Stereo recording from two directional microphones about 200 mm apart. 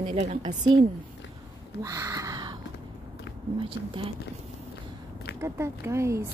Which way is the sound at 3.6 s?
25° right (ahead or behind).